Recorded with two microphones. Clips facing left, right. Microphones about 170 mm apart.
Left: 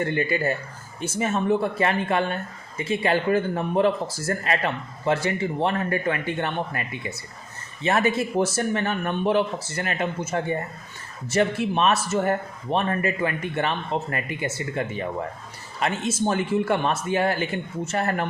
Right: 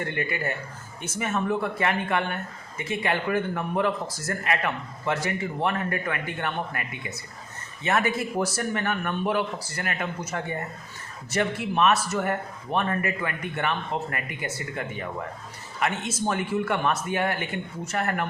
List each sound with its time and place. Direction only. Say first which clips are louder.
0.0 s speech: left 5 dB; 30° left (ahead or behind)